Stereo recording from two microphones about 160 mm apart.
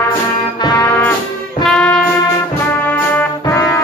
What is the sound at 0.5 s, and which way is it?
Brass instrument, 25° left (ahead or behind).